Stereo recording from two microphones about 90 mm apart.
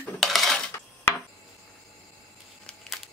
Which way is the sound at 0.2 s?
Centre (ahead or behind).